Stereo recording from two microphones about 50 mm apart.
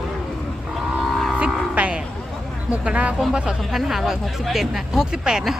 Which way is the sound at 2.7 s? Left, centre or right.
Right.